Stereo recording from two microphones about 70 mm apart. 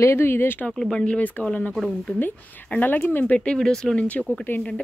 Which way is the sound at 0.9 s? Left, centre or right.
Centre.